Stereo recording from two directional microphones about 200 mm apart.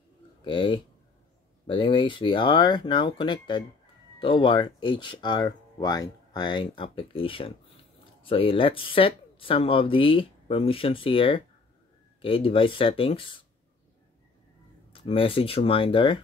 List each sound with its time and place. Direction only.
0.4 s speech: 25° left (ahead or behind)
14.9 s speech: 25° left (ahead or behind)